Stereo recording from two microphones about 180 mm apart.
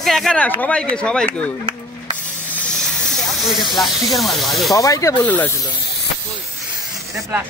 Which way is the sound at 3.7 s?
Centre (ahead or behind).